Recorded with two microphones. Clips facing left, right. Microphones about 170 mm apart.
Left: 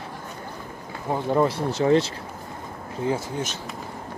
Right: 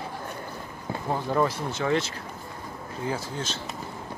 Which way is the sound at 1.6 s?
35° left (ahead or behind).